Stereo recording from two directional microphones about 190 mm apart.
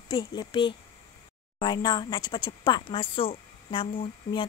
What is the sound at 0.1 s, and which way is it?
Speech, 25° left (ahead or behind).